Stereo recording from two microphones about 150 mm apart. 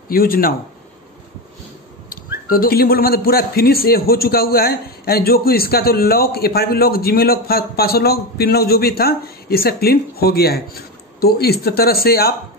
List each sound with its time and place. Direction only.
0.1 s speech: 75° left (ahead or behind)
2.0 s speech: 75° left (ahead or behind)